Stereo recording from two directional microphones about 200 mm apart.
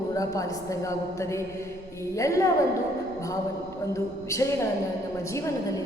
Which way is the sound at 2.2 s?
15° left (ahead or behind).